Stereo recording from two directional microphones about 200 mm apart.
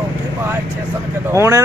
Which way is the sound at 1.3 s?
15° right (ahead or behind).